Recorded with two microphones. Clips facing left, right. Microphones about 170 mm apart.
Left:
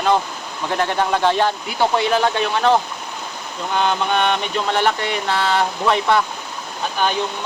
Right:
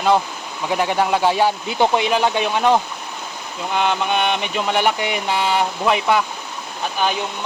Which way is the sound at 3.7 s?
5° right (ahead or behind).